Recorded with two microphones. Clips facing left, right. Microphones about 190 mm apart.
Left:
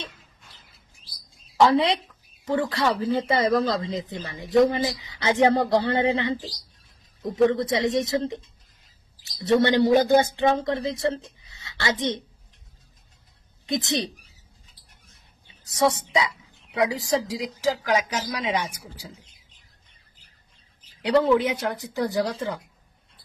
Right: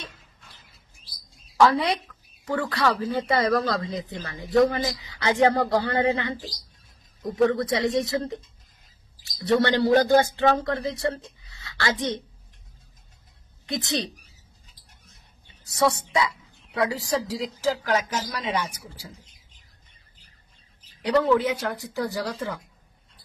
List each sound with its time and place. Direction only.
1.6 s a woman's voice: 25° left (ahead or behind)
7.4 s a woman's voice: 20° left (ahead or behind)
13.7 s speech: 20° left (ahead or behind)
15.6 s a woman's voice: 20° left (ahead or behind)
21.0 s a woman's voice: 20° left (ahead or behind)